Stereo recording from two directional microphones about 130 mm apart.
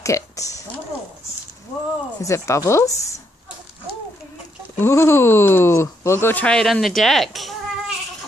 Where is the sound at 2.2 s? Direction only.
25° left (ahead or behind).